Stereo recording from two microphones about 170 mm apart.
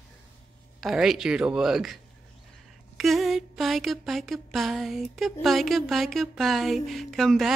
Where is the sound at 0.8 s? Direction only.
Centre (ahead or behind).